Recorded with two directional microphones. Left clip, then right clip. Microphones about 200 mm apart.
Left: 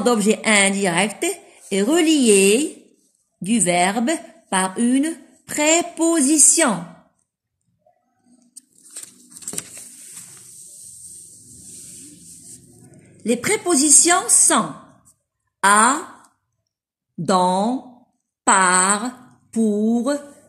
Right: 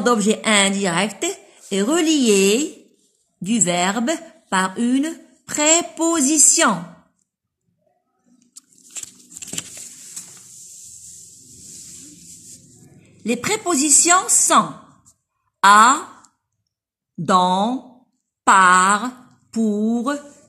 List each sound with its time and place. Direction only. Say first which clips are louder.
0.0 s a woman's voice: even; 20° right (ahead or behind)
8.9 s a sound: right 5 dB; 30° right (ahead or behind)
11.7 s a sound: right 2 dB; centre (ahead or behind)
13.2 s a woman's voice: left 1 dB; 20° right (ahead or behind)
15.6 s fart: right 4 dB; 20° right (ahead or behind)
17.2 s a woman's voice: right 1 dB; 20° right (ahead or behind)
18.5 s fart: right 4 dB; 20° right (ahead or behind)
19.9 s a woman's voice: left 2 dB; 20° right (ahead or behind)